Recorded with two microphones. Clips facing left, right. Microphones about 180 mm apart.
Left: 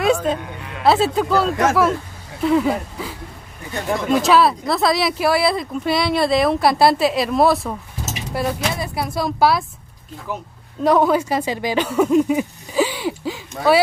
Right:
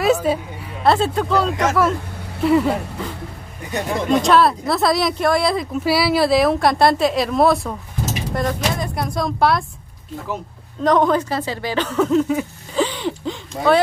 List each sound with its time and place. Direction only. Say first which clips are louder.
0.0 s a woman's voice: right 1 dB; 5° right (ahead or behind)
0.8 s speech: left 1 dB; 5° left (ahead or behind)
10.8 s speech: even; 10° left (ahead or behind)